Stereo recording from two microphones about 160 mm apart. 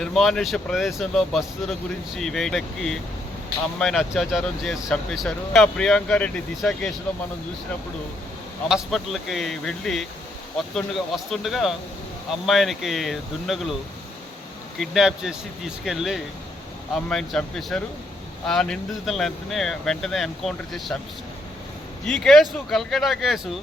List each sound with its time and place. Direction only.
0.0 s speech: centre (ahead or behind)
8.7 s speech: centre (ahead or behind)
14.8 s speech: 5° right (ahead or behind)
22.0 s speech: 5° left (ahead or behind)